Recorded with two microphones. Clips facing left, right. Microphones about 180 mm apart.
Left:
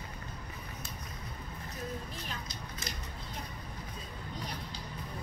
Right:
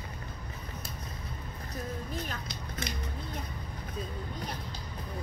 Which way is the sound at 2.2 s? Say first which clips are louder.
Right 3 dB; 50° right (ahead or behind).